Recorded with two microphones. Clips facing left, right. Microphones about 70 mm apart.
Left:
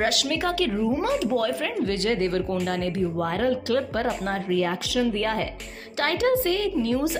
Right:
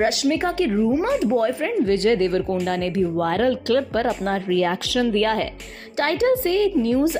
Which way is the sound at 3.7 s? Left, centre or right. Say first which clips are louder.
Right 4 dB; right.